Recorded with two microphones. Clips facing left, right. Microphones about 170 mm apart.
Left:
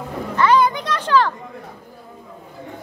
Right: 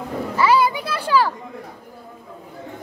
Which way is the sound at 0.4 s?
5° right (ahead or behind).